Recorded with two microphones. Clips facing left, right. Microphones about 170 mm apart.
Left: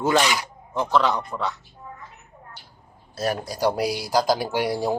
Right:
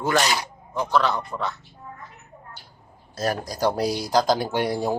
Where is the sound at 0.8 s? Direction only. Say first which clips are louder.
Left 1 dB; 20° left (ahead or behind).